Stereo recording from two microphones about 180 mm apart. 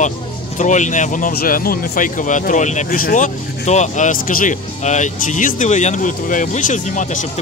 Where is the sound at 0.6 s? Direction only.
45° left (ahead or behind).